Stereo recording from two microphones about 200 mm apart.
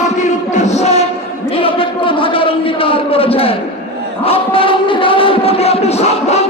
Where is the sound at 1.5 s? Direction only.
25° left (ahead or behind).